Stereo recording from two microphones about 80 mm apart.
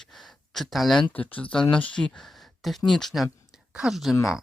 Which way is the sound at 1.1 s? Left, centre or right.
Centre.